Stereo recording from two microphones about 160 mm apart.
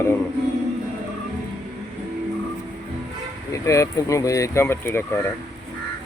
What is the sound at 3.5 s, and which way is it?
Speech, 20° left (ahead or behind).